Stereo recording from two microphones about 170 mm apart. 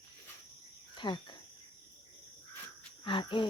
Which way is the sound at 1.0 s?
30° left (ahead or behind).